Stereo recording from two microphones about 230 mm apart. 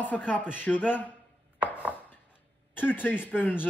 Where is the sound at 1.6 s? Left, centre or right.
Centre.